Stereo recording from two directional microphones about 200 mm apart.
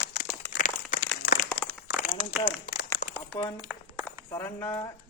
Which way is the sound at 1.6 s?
65° left (ahead or behind).